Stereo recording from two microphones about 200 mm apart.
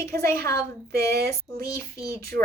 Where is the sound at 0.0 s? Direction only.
50° right (ahead or behind).